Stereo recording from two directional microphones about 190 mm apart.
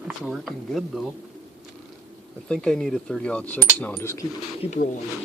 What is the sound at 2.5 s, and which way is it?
Speech, 5° left (ahead or behind).